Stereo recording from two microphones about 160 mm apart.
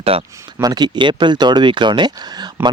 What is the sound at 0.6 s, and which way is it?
Speech, 25° right (ahead or behind).